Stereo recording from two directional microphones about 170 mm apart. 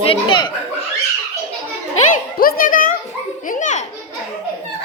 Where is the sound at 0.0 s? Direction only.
30° left (ahead or behind).